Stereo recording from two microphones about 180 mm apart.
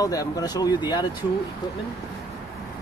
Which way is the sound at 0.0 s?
20° left (ahead or behind).